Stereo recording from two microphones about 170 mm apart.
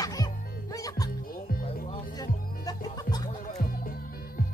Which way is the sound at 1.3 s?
60° left (ahead or behind).